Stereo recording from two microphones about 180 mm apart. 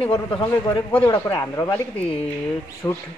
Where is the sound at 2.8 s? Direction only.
10° left (ahead or behind).